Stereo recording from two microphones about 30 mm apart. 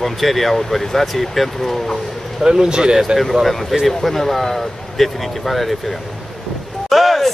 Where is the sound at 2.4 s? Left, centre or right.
Right.